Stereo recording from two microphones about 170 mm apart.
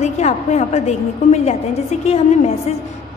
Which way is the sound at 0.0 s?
45° left (ahead or behind).